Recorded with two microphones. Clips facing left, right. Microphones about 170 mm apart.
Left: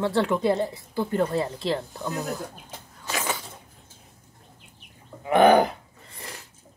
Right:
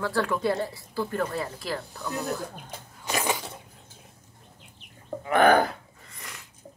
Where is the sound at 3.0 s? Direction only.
15° right (ahead or behind).